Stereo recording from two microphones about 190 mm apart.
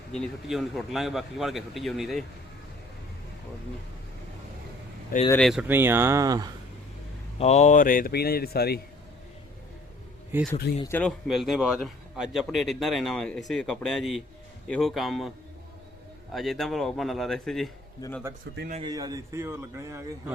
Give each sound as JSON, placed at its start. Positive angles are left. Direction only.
{"t": 0.1, "sound": "a man's voice", "side_deg": 0}
{"t": 5.3, "sound": "speech", "side_deg": 0}
{"t": 7.3, "sound": "speech", "side_deg": 35}
{"t": 10.3, "sound": "speech", "side_deg": -10}
{"t": 10.8, "sound": "speech", "side_deg": 10}
{"t": 11.3, "sound": "a man's voice", "side_deg": 0}
{"t": 16.3, "sound": "a man's voice", "side_deg": 0}
{"t": 18.0, "sound": "a man's voice", "side_deg": 20}
{"t": 18.7, "sound": "speech", "side_deg": -25}